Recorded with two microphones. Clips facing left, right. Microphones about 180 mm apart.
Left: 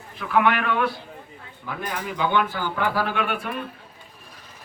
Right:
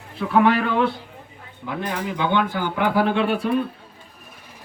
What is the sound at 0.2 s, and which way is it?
Speech, 35° right (ahead or behind).